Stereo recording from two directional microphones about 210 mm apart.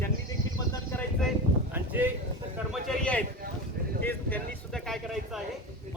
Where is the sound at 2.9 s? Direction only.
5° left (ahead or behind).